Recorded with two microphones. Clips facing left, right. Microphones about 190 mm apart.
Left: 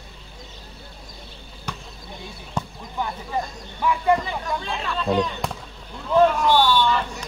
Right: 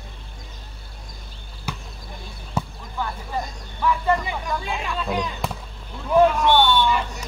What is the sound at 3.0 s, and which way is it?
Vehicle, 20° left (ahead or behind).